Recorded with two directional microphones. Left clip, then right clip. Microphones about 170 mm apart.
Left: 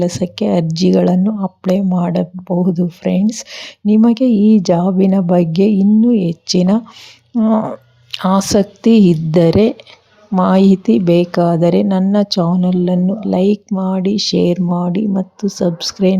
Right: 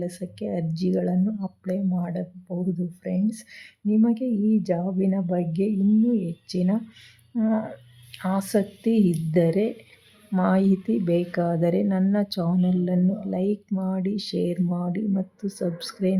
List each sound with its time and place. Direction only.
0.0 s speech: 30° left (ahead or behind)